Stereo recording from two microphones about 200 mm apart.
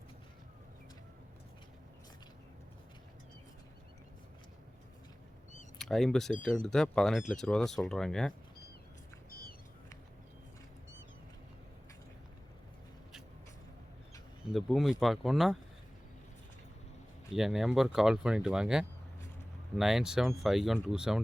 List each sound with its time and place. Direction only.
5.8 s speech: centre (ahead or behind)
9.3 s a sound: 50° left (ahead or behind)
14.5 s speech: centre (ahead or behind)
17.3 s speech: centre (ahead or behind)